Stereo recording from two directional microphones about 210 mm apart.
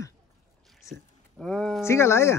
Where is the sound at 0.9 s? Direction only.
Centre (ahead or behind).